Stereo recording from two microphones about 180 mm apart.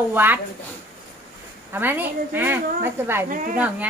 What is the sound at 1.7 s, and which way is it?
A woman's voice, 10° right (ahead or behind).